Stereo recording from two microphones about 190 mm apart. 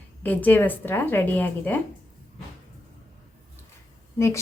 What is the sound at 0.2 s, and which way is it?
Speech, 10° left (ahead or behind).